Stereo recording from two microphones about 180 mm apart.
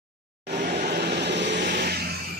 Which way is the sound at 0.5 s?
65° right (ahead or behind).